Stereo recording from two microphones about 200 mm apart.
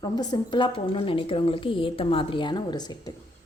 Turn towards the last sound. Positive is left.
turn(degrees=20)  # may be behind; listen again after turning